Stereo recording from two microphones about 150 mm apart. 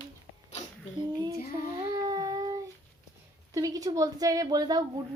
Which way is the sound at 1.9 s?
25° right (ahead or behind).